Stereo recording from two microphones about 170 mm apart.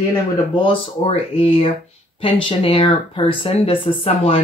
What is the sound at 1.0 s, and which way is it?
Speech, 35° left (ahead or behind).